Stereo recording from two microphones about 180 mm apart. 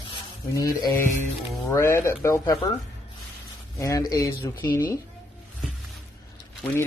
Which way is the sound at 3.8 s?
20° left (ahead or behind).